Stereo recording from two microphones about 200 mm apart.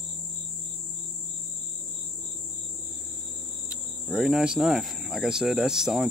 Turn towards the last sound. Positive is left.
turn(degrees=0)  # may be behind; listen again after turning